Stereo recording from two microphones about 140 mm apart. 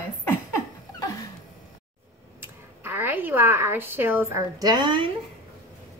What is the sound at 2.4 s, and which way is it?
Speech, 15° right (ahead or behind).